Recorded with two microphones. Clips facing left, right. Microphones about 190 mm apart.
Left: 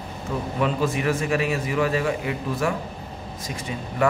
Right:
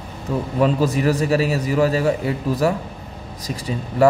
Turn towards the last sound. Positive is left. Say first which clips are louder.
# right 6 dB
turn(degrees=-35)  # may be behind; listen again after turning